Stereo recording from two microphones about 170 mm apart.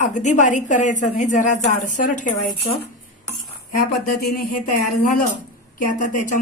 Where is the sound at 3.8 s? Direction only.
60° left (ahead or behind).